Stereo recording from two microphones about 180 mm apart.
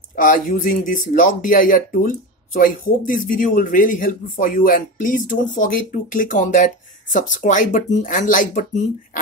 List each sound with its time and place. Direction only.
0.1 s speech: 50° left (ahead or behind)